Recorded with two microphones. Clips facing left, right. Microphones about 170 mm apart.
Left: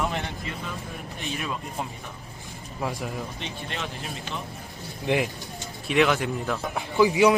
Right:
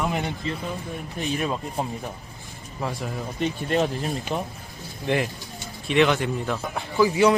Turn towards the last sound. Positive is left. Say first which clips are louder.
# even
turn(degrees=15)  # may be behind; listen again after turning